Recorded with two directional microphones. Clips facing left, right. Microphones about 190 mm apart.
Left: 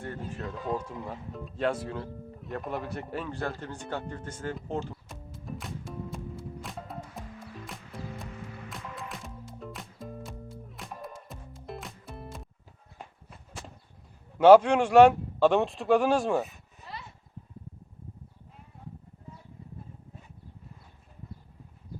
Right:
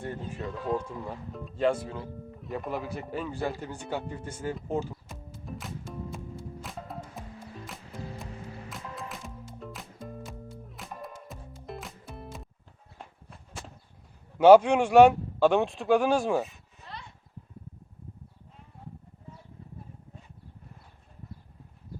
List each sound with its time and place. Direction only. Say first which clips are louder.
0.3 s music: right 2 dB; centre (ahead or behind)
14.3 s a man's voice: even; centre (ahead or behind)
16.8 s a sound: left 1 dB; 5° left (ahead or behind)